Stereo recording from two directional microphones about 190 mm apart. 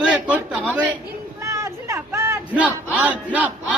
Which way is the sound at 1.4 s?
15° right (ahead or behind).